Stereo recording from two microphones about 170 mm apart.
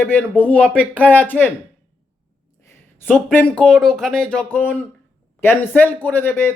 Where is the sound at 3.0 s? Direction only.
10° left (ahead or behind).